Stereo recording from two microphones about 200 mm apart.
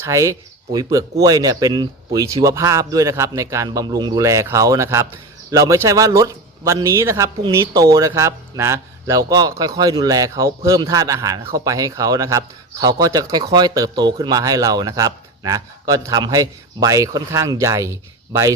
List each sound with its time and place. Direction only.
0.0 s a man's voice: 15° right (ahead or behind)